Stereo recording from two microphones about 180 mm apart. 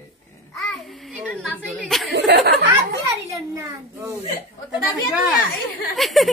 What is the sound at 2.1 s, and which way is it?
Speech, 70° right (ahead or behind).